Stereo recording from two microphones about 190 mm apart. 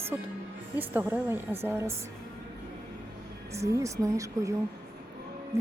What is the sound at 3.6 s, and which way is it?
Speech, 15° right (ahead or behind).